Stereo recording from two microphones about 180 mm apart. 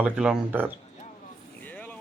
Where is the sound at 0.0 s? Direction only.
5° right (ahead or behind).